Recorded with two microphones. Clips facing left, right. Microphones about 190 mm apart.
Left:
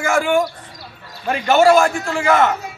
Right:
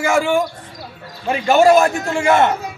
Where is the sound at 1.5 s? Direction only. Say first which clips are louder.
Right 1 dB; 15° right (ahead or behind).